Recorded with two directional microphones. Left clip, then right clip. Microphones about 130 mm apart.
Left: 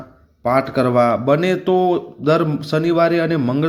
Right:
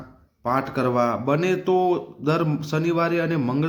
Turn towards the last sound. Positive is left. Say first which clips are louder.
# left 5 dB
turn(degrees=25)  # may be behind; listen again after turning